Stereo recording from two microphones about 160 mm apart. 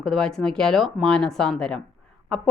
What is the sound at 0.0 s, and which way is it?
A woman's voice, centre (ahead or behind).